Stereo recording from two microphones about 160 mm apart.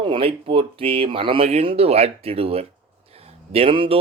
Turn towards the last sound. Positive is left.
turn(degrees=-35)  # may be behind; listen again after turning